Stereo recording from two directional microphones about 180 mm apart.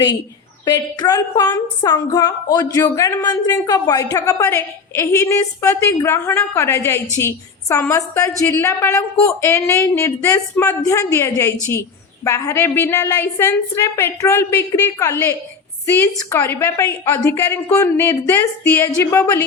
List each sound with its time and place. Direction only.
0.6 s a woman's voice: 20° left (ahead or behind)